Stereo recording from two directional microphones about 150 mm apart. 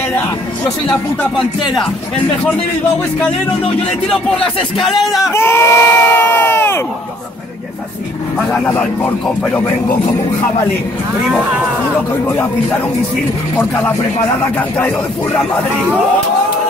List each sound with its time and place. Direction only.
0.7 s speech: 5° left (ahead or behind)
4.7 s speech: centre (ahead or behind)
5.2 s crowd: 15° left (ahead or behind)
8.4 s speech: 5° left (ahead or behind)
12.3 s speech: 15° left (ahead or behind)
14.6 s speech: 10° left (ahead or behind)